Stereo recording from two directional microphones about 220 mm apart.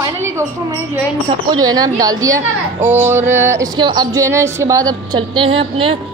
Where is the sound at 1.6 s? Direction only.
15° right (ahead or behind).